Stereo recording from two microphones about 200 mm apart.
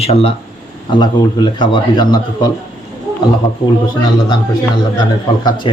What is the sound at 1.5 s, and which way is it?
Speech, 20° left (ahead or behind).